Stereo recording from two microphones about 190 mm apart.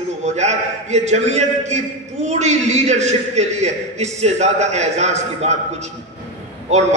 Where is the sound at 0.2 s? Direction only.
35° right (ahead or behind).